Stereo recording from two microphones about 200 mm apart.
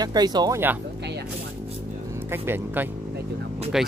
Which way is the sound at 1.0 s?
55° right (ahead or behind).